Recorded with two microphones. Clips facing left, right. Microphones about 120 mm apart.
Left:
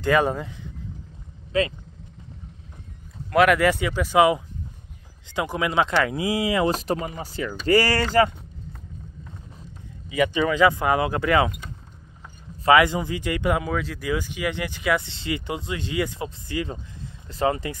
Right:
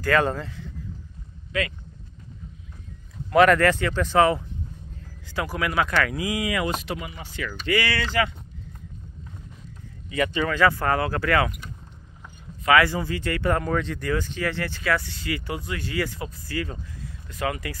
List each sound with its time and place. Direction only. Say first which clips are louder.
0.0 s speech: left 1 dB; 15° left (ahead or behind)
1.5 s speech: left 5 dB; 30° left (ahead or behind)
3.3 s speech: right 1 dB; 5° left (ahead or behind); by 8.3 s 40° left (ahead or behind)
10.0 s speech: left 3 dB; 10° left (ahead or behind)
12.6 s speech: left 2 dB; 20° left (ahead or behind)